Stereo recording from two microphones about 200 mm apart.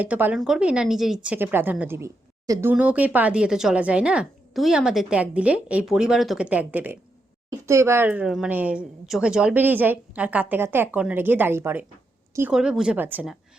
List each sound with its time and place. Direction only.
0.0 s a woman's voice: 10° right (ahead or behind)